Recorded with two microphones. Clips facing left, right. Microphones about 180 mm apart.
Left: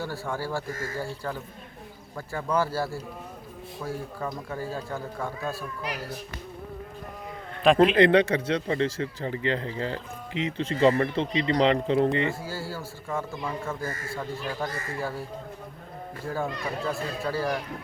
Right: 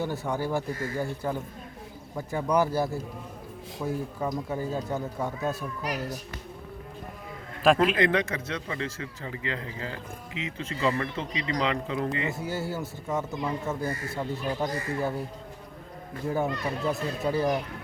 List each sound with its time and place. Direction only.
0.0 s speech: 20° right (ahead or behind)
5.8 s speech: 40° right (ahead or behind)
7.9 s speech: 30° left (ahead or behind)
12.3 s speech: 20° right (ahead or behind)
16.2 s speech: 20° right (ahead or behind)